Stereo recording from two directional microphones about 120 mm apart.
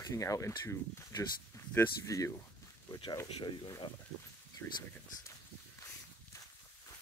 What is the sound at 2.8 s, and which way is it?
Speech, 45° left (ahead or behind).